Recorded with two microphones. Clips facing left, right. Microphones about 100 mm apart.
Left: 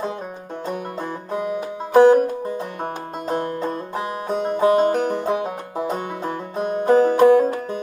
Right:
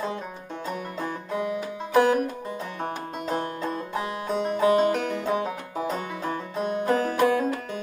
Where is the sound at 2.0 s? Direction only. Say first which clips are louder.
Left 8 dB; 35° left (ahead or behind).